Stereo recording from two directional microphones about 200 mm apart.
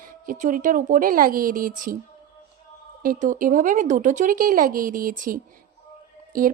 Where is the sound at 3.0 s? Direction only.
45° right (ahead or behind).